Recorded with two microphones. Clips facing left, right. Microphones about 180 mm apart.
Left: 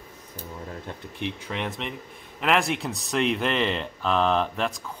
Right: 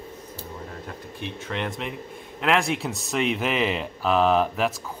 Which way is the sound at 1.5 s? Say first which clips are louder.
Right 1 dB; centre (ahead or behind).